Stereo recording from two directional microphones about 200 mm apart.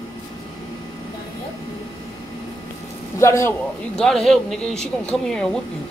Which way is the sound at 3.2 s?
15° left (ahead or behind).